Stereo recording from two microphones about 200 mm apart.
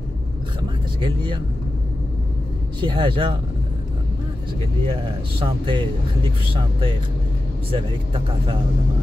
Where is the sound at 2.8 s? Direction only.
25° right (ahead or behind).